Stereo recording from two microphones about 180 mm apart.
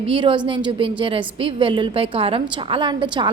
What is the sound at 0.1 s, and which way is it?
A woman's voice, 30° right (ahead or behind).